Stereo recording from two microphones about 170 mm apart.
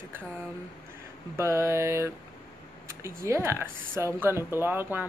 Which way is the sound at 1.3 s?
15° right (ahead or behind).